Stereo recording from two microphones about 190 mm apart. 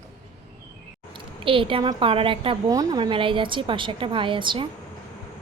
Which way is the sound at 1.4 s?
30° right (ahead or behind).